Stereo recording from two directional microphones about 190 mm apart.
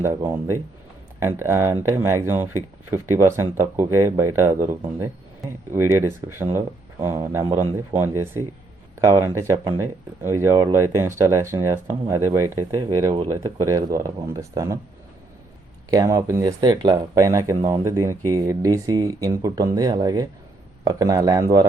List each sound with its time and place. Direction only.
0.0 s speech: 15° right (ahead or behind)
1.4 s speech: 15° right (ahead or behind)
15.9 s speech: 20° right (ahead or behind)